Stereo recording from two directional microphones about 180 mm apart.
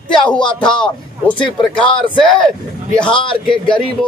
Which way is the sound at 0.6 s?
5° left (ahead or behind).